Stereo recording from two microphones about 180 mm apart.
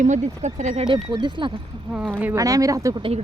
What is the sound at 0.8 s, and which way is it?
Speech, 25° right (ahead or behind).